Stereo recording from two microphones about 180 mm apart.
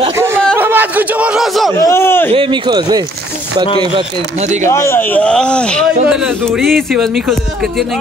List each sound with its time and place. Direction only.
0.6 s a sound: 10° right (ahead or behind)
1.8 s a man's voice: 15° left (ahead or behind)
2.3 s speech: 25° right (ahead or behind)
4.6 s speech: 15° left (ahead or behind)